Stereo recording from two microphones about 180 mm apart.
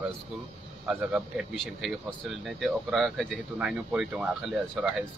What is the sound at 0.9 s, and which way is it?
Speech, 5° right (ahead or behind).